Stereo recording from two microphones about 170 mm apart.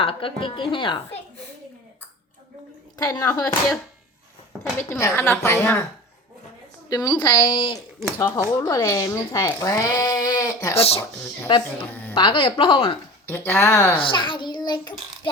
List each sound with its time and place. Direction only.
0.0 s speech: 30° left (ahead or behind)
3.0 s speech: 20° left (ahead or behind)
4.9 s a woman's voice: 15° left (ahead or behind)
6.9 s speech: 25° left (ahead or behind)
10.8 s speech: 35° left (ahead or behind)
13.2 s a woman's voice: 15° left (ahead or behind)
14.0 s a child's voice: 30° left (ahead or behind)